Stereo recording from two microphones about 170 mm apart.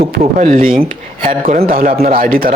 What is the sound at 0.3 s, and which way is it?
A man's voice, 55° right (ahead or behind).